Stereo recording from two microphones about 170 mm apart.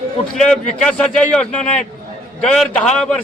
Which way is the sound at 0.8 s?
5° left (ahead or behind).